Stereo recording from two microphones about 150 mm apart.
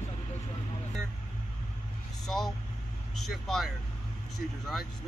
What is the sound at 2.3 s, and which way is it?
Speech, centre (ahead or behind).